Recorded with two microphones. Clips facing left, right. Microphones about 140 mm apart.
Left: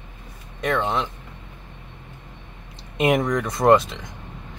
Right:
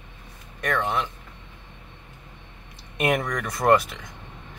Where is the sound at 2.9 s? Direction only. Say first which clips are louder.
Left 4 dB; 20° left (ahead or behind).